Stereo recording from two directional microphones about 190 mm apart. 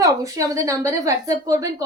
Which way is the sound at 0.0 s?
20° right (ahead or behind).